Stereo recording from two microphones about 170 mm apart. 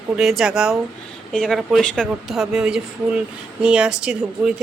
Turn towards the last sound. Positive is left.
turn(degrees=-5)  # may be behind; listen again after turning